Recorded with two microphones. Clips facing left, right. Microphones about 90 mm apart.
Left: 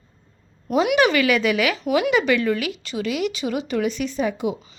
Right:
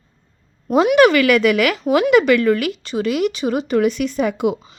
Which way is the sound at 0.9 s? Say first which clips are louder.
Right 7 dB; 55° right (ahead or behind).